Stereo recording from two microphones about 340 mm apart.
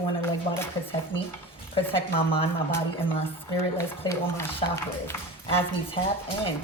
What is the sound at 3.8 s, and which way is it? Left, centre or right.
Speech, centre.